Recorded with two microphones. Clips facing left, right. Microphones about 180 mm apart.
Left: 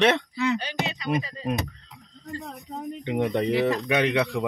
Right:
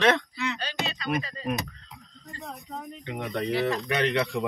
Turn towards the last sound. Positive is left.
turn(degrees=15)  # may be behind; listen again after turning